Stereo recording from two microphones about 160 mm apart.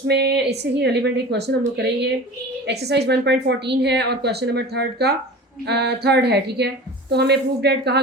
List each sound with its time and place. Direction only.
0.1 s a woman's voice: 90° right